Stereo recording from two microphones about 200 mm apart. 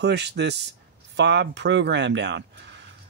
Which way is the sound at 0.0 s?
55° right (ahead or behind).